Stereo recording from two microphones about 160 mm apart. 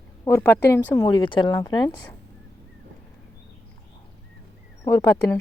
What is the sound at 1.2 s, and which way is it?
Speech, 30° left (ahead or behind).